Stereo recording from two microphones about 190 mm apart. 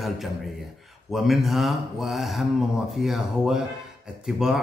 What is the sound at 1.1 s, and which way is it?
A man's voice, centre (ahead or behind).